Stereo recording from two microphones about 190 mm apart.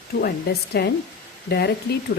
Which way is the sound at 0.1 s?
55° left (ahead or behind).